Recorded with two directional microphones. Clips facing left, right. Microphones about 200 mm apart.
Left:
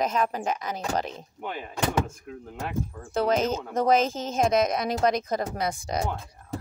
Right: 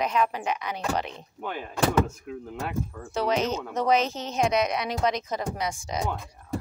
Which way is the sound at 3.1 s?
50° left (ahead or behind).